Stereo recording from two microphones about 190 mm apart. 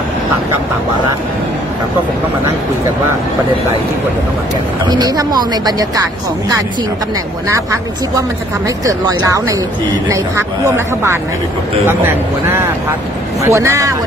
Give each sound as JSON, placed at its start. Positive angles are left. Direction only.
{"t": 4.8, "sound": "speech", "side_deg": -20}
{"t": 7.4, "sound": "speech", "side_deg": -15}